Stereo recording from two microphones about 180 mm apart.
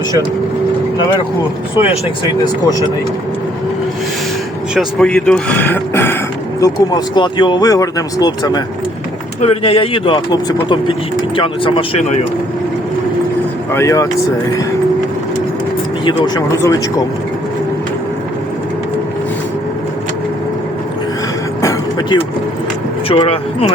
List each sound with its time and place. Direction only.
2.2 s speech: 20° left (ahead or behind)
4.7 s speech: centre (ahead or behind); by 8.6 s 20° left (ahead or behind)
9.4 s speech: 35° left (ahead or behind)
11.3 s speech: 30° left (ahead or behind)
13.7 s speech: 15° left (ahead or behind)
16.0 s speech: 25° left (ahead or behind)
21.6 s music: 20° left (ahead or behind)
23.0 s speech: 35° left (ahead or behind)